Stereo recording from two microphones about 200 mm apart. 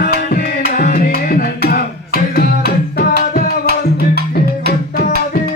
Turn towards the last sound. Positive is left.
turn(degrees=50)  # may be behind; listen again after turning